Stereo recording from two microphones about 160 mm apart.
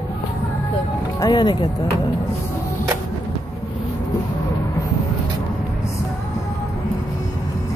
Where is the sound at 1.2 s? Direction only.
30° left (ahead or behind).